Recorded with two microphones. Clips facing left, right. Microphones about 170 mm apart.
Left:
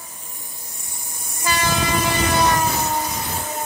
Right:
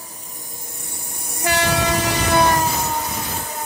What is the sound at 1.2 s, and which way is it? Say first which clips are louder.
Train: right 2 dB; 70° right (ahead or behind).